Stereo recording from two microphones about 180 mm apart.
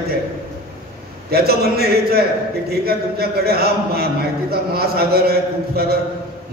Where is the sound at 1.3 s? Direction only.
60° right (ahead or behind).